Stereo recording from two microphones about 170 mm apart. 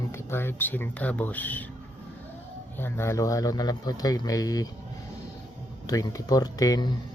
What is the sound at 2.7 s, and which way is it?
Speech, 15° left (ahead or behind).